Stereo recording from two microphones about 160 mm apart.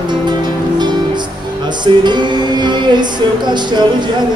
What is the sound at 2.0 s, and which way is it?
Music, 30° right (ahead or behind).